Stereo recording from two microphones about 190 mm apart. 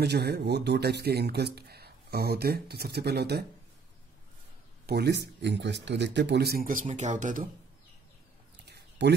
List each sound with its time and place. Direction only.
0.0 s speech: 60° right (ahead or behind)
4.8 s speech: 60° right (ahead or behind); by 7.4 s 40° right (ahead or behind)
8.6 s a sound: 60° right (ahead or behind)